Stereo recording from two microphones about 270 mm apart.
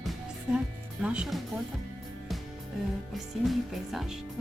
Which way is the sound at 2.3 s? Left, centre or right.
Centre.